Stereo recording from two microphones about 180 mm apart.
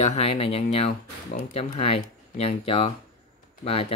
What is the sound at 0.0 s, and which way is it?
Speech, 35° left (ahead or behind).